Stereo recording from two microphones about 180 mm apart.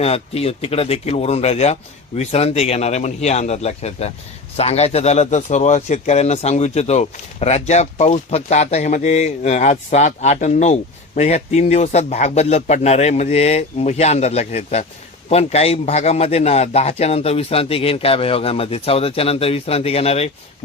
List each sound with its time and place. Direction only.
0.0 s a man's voice: 35° left (ahead or behind)